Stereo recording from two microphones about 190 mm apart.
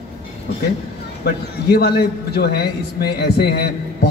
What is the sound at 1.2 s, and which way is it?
A man's voice, 55° left (ahead or behind).